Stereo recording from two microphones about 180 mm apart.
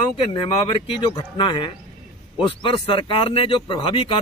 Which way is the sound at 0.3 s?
25° left (ahead or behind).